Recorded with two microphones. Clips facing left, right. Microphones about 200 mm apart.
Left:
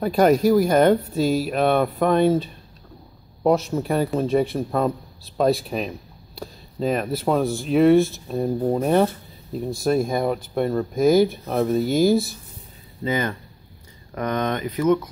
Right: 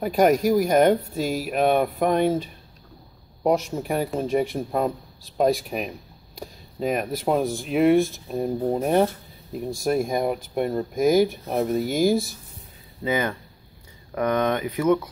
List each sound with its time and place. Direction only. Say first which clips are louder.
0.0 s speech: left 2 dB; 15° right (ahead or behind)